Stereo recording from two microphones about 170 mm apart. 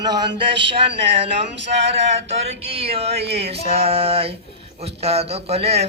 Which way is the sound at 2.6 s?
35° right (ahead or behind).